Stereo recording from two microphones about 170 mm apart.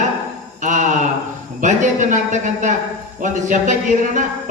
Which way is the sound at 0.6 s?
45° right (ahead or behind).